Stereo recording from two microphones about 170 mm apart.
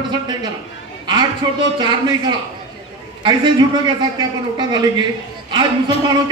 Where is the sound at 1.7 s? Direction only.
25° right (ahead or behind).